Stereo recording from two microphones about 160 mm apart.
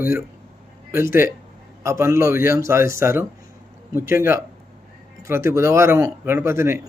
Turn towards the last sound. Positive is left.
turn(degrees=-15)  # may be behind; listen again after turning